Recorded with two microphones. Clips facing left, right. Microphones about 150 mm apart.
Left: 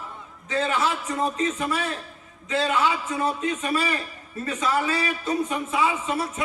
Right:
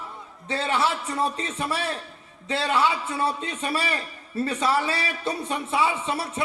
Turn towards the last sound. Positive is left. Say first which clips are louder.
# left 1 dB
turn(degrees=-30)  # may be behind; listen again after turning